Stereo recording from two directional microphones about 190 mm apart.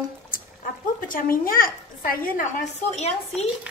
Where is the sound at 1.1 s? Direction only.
45° left (ahead or behind).